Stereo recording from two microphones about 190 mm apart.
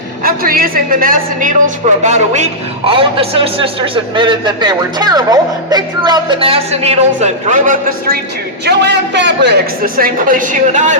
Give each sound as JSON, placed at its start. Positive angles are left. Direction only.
{"t": 0.2, "sound": "a woman's voice", "side_deg": -50}
{"t": 8.6, "sound": "a man's voice", "side_deg": -65}